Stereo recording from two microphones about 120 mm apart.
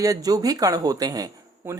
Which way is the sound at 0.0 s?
30° right (ahead or behind).